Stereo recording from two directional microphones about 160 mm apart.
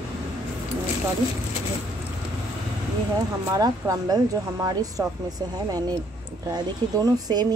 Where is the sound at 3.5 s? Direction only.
20° right (ahead or behind).